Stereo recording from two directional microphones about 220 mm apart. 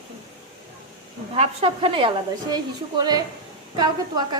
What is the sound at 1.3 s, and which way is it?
A woman's voice, 25° right (ahead or behind).